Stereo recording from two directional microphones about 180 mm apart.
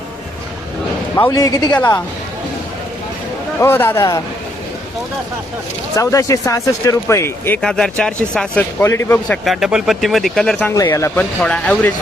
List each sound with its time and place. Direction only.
1.1 s speech: 15° left (ahead or behind)
3.6 s speech: 15° left (ahead or behind)
6.0 s speech: 15° left (ahead or behind)
8.8 s speech: 15° left (ahead or behind)
9.4 s speech: centre (ahead or behind)
10.8 s speech: 15° left (ahead or behind)